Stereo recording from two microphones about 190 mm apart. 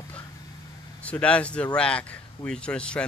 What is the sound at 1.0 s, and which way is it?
Speech, 5° left (ahead or behind).